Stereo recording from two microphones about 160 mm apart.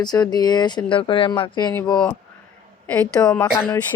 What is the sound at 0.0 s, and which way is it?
Speech, 25° left (ahead or behind).